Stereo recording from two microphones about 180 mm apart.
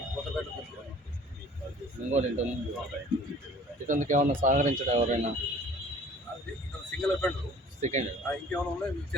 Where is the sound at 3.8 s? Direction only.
45° right (ahead or behind).